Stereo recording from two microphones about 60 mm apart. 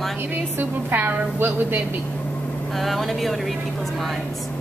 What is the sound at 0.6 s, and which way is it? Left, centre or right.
A woman's voice, right.